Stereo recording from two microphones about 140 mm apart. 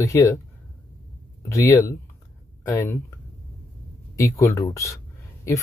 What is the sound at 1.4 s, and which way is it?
Speech, 20° left (ahead or behind).